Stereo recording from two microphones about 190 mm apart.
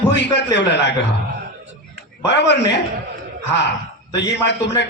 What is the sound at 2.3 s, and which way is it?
Speech, 65° left (ahead or behind).